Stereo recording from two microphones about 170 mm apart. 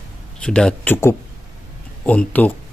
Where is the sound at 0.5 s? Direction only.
5° left (ahead or behind).